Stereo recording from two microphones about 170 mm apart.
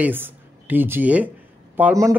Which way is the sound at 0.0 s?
10° right (ahead or behind).